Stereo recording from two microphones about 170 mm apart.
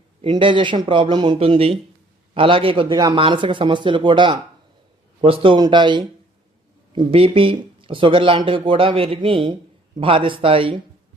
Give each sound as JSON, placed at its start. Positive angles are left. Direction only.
{"t": 0.2, "sound": "a man's voice", "side_deg": -30}